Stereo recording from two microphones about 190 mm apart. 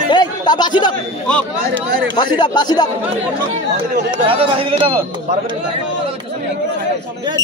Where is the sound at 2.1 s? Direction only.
25° left (ahead or behind).